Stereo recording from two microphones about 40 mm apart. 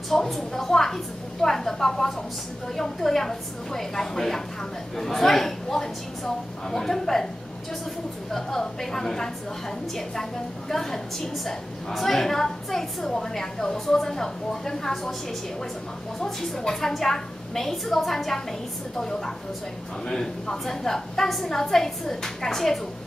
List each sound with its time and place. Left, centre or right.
0.1 s a woman's voice: centre
8.3 s a woman's voice: centre
10.7 s a woman's voice: centre
16.2 s a woman's voice: centre